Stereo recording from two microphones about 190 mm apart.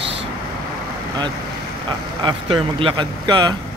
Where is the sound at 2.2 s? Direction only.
25° right (ahead or behind).